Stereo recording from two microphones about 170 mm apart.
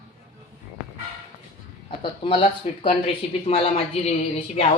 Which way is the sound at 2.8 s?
35° left (ahead or behind).